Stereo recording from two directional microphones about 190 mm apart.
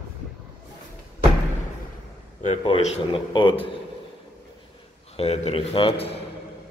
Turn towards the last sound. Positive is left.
turn(degrees=30)  # may be behind; listen again after turning